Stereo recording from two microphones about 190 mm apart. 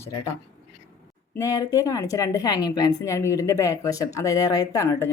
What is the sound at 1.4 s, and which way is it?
A woman's voice, 15° left (ahead or behind).